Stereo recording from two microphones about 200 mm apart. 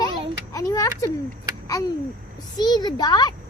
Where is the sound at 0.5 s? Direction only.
15° left (ahead or behind).